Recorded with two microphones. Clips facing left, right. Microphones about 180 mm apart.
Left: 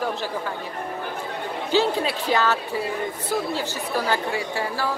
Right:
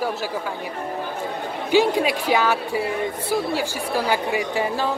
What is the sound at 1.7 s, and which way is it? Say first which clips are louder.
Speech: right 4 dB; 15° right (ahead or behind).